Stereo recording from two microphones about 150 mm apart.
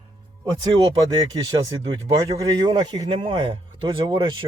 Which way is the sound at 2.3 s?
30° right (ahead or behind).